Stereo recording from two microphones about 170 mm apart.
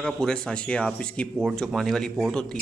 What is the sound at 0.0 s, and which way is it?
Speech, 5° left (ahead or behind).